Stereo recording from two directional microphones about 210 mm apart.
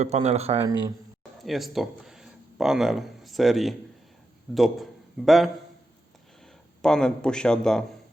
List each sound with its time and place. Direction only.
0.0 s speech: 30° right (ahead or behind)
0.7 s speech: 15° right (ahead or behind)
1.5 s a man's voice: centre (ahead or behind)